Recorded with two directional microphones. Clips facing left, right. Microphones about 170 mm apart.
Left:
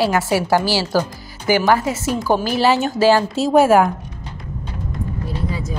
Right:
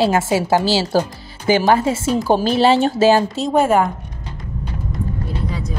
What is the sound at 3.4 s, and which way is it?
Speech, 5° left (ahead or behind).